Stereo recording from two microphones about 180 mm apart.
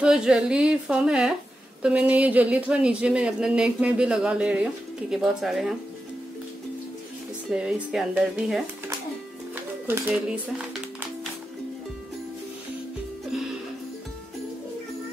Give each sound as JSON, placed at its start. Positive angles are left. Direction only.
{"t": 0.0, "sound": "a woman's voice", "side_deg": -5}
{"t": 7.5, "sound": "a woman's voice", "side_deg": -5}
{"t": 9.8, "sound": "speech", "side_deg": -10}